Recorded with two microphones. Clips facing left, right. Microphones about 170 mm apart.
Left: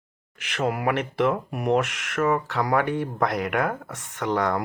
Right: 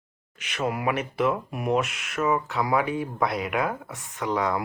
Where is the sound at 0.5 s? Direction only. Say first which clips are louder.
Left 2 dB; 70° left (ahead or behind).